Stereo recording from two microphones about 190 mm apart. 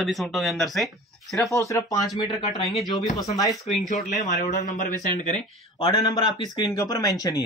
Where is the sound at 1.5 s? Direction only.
15° left (ahead or behind).